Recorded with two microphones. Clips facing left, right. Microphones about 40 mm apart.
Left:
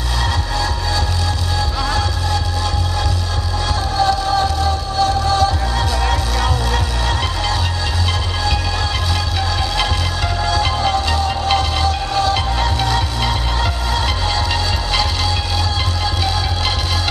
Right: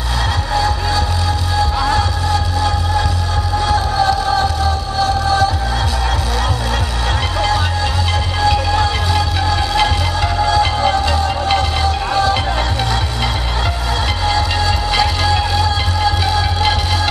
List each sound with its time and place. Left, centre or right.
1.6 s music: centre
8.4 s music: centre
14.9 s music: centre